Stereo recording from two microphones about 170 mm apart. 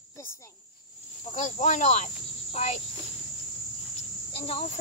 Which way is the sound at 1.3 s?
40° left (ahead or behind).